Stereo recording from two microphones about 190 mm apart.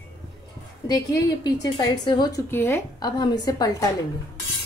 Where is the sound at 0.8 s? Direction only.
20° left (ahead or behind).